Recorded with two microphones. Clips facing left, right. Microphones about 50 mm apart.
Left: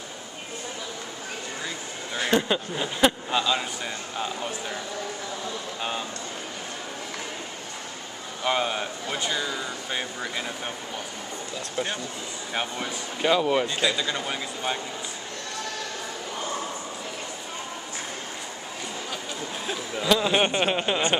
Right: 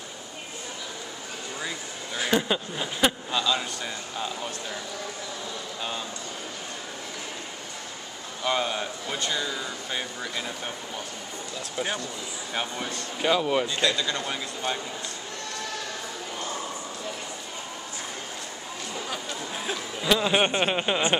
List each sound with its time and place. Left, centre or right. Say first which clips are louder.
2.1 s speech: left 1 dB; centre
5.8 s speech: left 2 dB; centre
8.5 s speech: left 1 dB; centre
11.7 s speech: even; centre
12.5 s speech: left 1 dB; centre
19.6 s speech: left 2 dB; centre